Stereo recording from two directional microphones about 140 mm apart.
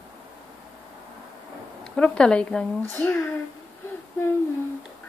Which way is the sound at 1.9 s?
5° left (ahead or behind).